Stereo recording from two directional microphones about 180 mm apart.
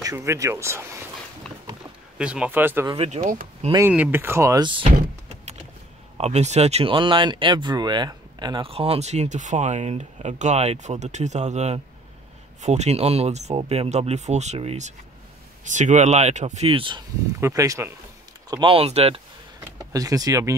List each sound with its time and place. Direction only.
0.0 s speech: 15° right (ahead or behind)
2.1 s speech: 5° right (ahead or behind)
2.9 s speech: 40° right (ahead or behind)
3.7 s speech: 10° right (ahead or behind)
6.1 s speech: 35° right (ahead or behind)
17.4 s speech: 15° right (ahead or behind)
18.5 s speech: 30° right (ahead or behind)
19.8 s speech: 20° right (ahead or behind)